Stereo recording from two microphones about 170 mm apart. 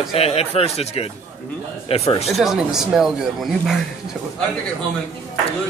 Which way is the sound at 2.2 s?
Centre (ahead or behind).